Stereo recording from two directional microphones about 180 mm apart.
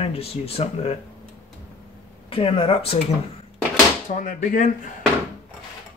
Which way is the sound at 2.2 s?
30° left (ahead or behind).